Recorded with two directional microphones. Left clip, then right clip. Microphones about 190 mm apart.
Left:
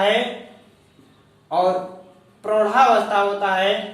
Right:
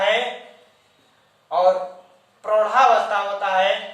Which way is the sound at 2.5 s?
5° right (ahead or behind).